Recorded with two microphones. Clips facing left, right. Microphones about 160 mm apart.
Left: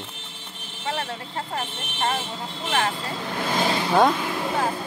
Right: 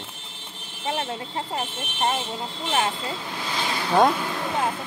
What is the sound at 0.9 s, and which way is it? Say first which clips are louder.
Vehicle: right 1 dB; 20° right (ahead or behind).